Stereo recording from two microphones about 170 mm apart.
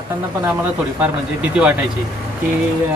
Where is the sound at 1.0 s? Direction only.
10° right (ahead or behind).